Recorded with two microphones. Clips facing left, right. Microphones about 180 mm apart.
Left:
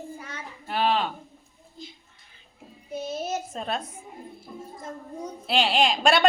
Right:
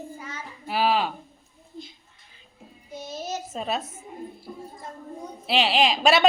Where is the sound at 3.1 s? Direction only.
55° left (ahead or behind).